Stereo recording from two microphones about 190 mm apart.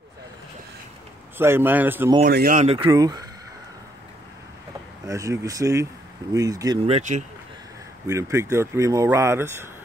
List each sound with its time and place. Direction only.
1.4 s speech: 10° right (ahead or behind)
2.2 s speech: 50° right (ahead or behind)
2.6 s speech: 30° right (ahead or behind)
2.9 s speech: 20° right (ahead or behind)
5.0 s speech: 15° right (ahead or behind)
6.9 s speech: 40° right (ahead or behind)
8.1 s speech: 15° right (ahead or behind)